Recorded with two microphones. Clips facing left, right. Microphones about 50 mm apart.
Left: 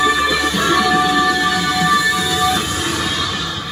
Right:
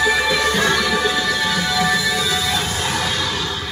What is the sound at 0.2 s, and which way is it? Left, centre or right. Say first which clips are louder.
Music: left 1 dB; left.